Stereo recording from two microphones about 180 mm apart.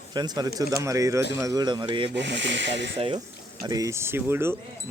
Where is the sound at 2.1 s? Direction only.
80° right.